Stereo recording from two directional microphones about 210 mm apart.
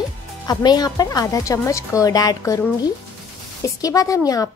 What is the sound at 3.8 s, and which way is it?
Speech, 15° left (ahead or behind).